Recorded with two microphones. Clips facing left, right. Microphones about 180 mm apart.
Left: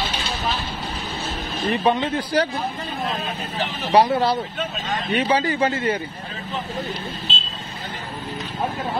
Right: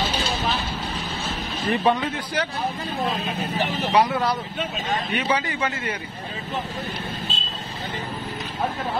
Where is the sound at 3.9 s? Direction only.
30° left (ahead or behind).